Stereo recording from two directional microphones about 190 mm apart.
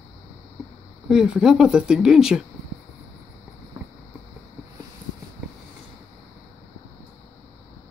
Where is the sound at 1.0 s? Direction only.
5° right (ahead or behind).